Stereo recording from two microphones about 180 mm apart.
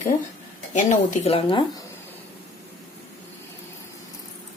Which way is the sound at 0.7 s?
45° left (ahead or behind).